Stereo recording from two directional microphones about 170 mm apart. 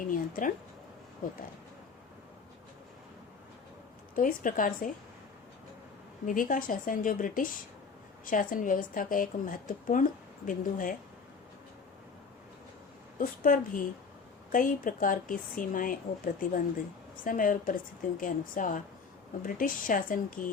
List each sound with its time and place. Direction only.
0.0 s speech: 55° left (ahead or behind)
4.1 s a woman's voice: 50° left (ahead or behind)
6.2 s a woman's voice: 50° left (ahead or behind)
13.1 s a woman's voice: 50° left (ahead or behind)